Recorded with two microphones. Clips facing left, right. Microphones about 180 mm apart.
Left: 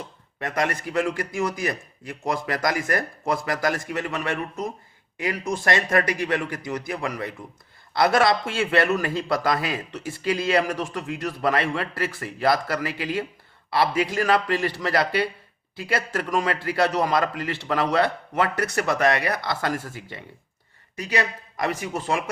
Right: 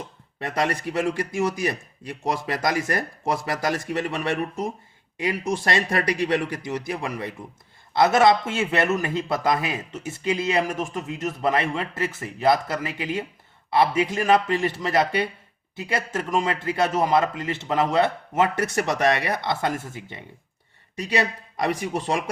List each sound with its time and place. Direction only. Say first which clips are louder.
0.3 s a man's voice: right 1 dB; 30° right (ahead or behind)